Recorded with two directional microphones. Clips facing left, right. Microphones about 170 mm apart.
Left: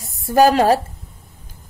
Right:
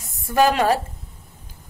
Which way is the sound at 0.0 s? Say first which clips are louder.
Left 4 dB; 35° left (ahead or behind).